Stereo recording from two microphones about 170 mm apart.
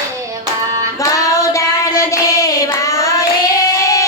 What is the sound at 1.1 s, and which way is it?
Child singing, 20° left (ahead or behind).